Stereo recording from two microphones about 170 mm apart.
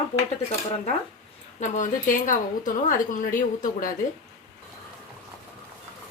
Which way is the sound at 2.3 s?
50° left (ahead or behind).